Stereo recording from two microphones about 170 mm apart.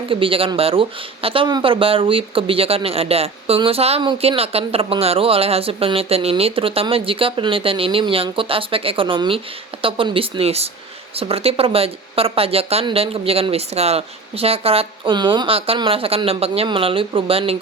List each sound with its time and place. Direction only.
0.1 s speech: 30° right (ahead or behind)